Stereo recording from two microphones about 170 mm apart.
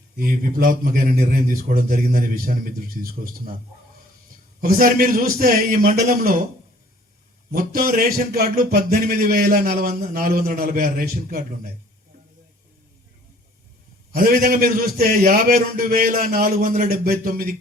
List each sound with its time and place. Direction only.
0.2 s a man's voice: 55° right (ahead or behind)
4.6 s a man's voice: 55° right (ahead or behind)
7.5 s a man's voice: 55° right (ahead or behind)
14.1 s a man's voice: 55° right (ahead or behind)